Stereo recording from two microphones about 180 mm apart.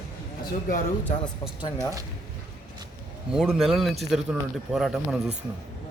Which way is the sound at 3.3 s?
Centre (ahead or behind).